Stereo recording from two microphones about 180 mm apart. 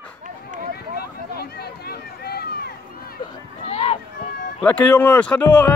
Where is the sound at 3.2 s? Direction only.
30° left (ahead or behind).